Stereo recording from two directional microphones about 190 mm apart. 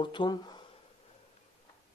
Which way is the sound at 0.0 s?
25° left (ahead or behind).